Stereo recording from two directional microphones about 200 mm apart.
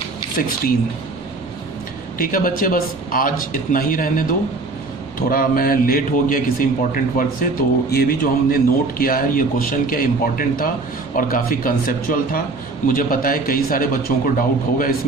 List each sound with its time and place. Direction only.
0.4 s a man's voice: 45° left (ahead or behind)
2.1 s a man's voice: 45° left (ahead or behind)